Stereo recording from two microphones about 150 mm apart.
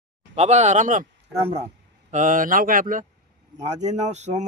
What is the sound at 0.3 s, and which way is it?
Speech, 50° right (ahead or behind).